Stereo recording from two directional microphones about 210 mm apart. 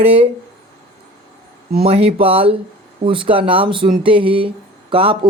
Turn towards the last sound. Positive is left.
turn(degrees=-25)  # may be behind; listen again after turning